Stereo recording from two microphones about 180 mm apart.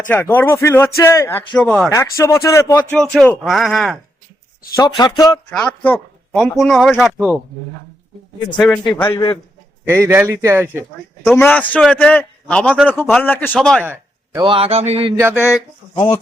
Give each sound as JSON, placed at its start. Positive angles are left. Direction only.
{"t": 0.1, "sound": "speech", "side_deg": 15}
{"t": 1.5, "sound": "speech", "side_deg": 5}
{"t": 1.9, "sound": "speech", "side_deg": 15}
{"t": 3.0, "sound": "speech", "side_deg": 5}
{"t": 4.8, "sound": "speech", "side_deg": 20}
{"t": 5.5, "sound": "speech", "side_deg": 5}
{"t": 8.5, "sound": "speech", "side_deg": 5}
{"t": 9.8, "sound": "a man's voice", "side_deg": -15}
{"t": 11.4, "sound": "speech", "side_deg": 10}
{"t": 14.3, "sound": "speech", "side_deg": -30}
{"t": 15.1, "sound": "a man's voice", "side_deg": -15}